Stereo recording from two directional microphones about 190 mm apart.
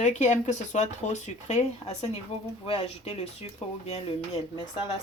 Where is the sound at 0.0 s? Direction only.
40° left (ahead or behind).